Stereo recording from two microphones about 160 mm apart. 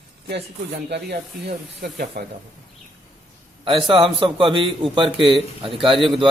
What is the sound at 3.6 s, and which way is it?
Speech, 35° right (ahead or behind).